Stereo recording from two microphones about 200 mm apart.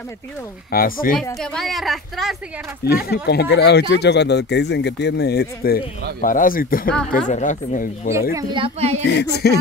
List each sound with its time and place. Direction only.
0.7 s speech: 45° left (ahead or behind)
1.4 s a woman's voice: centre (ahead or behind)
2.8 s speech: 50° left (ahead or behind)
8.1 s speech: 15° right (ahead or behind); by 9.0 s 30° right (ahead or behind)
9.0 s speech: 60° left (ahead or behind)